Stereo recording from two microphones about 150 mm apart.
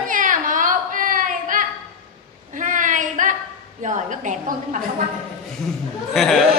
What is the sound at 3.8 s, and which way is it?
Speech, 55° right (ahead or behind).